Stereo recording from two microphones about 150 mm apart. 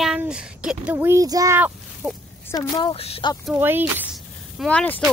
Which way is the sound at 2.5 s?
30° left (ahead or behind).